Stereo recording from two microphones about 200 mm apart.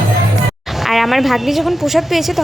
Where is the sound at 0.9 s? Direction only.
Centre (ahead or behind).